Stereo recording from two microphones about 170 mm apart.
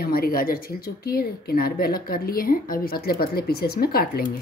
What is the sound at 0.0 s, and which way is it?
Speech, 60° left (ahead or behind).